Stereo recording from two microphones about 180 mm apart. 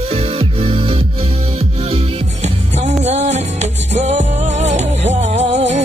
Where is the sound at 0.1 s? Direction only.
30° right (ahead or behind).